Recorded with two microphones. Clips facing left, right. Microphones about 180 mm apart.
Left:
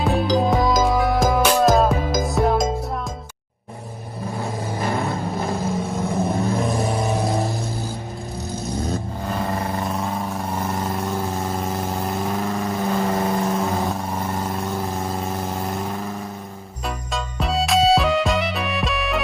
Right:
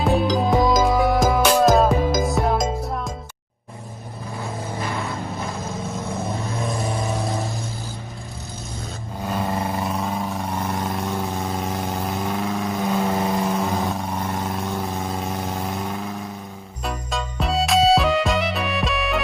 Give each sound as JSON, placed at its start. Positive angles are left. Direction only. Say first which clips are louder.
{"t": 0.0, "sound": "music", "louder": "even", "side_deg": 0}
{"t": 4.8, "sound": "vehicle", "louder": "left 6 dB", "side_deg": 35}
{"t": 9.5, "sound": "vehicle", "louder": "even", "side_deg": -10}
{"t": 9.8, "sound": "vehicle", "louder": "even", "side_deg": 0}
{"t": 16.8, "sound": "music", "louder": "even", "side_deg": 0}